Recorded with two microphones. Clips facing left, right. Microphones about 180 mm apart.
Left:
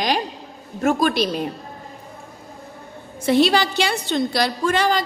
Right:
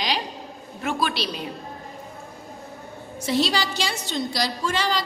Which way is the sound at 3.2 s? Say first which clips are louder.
Left 7 dB; 55° left (ahead or behind).